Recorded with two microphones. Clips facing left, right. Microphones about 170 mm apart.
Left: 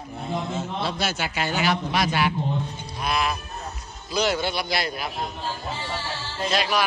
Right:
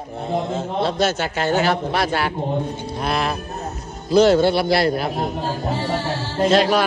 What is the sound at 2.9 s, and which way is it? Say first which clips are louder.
Music: right 3 dB; 45° right (ahead or behind).